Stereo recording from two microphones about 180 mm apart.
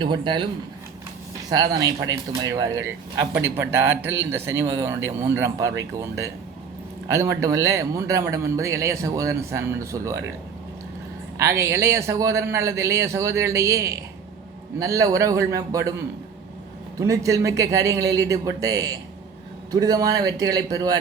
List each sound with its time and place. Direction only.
0.0 s a man's voice: 25° right (ahead or behind)
1.5 s speech: 20° right (ahead or behind)
11.3 s a man's voice: 15° right (ahead or behind)
17.0 s a man's voice: 20° right (ahead or behind)